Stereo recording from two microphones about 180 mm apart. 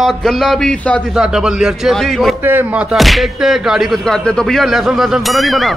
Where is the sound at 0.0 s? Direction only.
Centre (ahead or behind).